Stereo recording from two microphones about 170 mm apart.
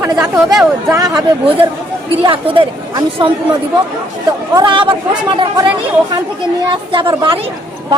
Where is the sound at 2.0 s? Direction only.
30° right (ahead or behind).